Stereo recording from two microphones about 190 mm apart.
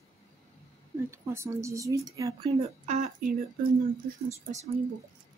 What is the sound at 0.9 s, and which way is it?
Speech, 15° right (ahead or behind).